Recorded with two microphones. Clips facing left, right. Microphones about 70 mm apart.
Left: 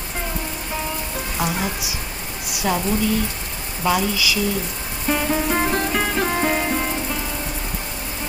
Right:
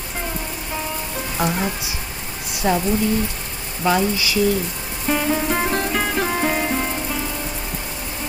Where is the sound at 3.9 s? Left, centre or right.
Right.